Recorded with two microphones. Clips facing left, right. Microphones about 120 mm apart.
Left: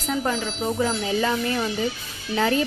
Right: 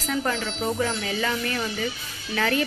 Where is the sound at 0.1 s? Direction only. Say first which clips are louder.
Left 2 dB; 5° left (ahead or behind).